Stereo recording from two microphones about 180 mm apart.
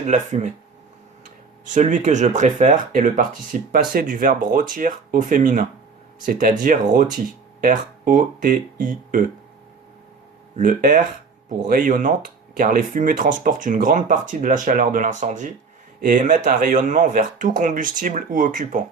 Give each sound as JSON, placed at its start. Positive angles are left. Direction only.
{"t": 0.1, "sound": "speech", "side_deg": -40}
{"t": 1.6, "sound": "speech", "side_deg": -40}
{"t": 10.6, "sound": "speech", "side_deg": -50}